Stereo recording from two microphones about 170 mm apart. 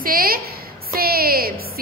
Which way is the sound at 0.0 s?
60° right (ahead or behind).